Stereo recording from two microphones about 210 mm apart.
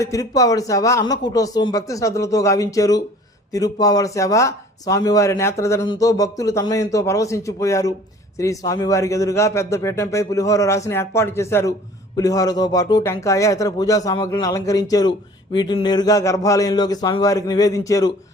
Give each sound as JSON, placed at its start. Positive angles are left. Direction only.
{"t": 0.0, "sound": "speech", "side_deg": 15}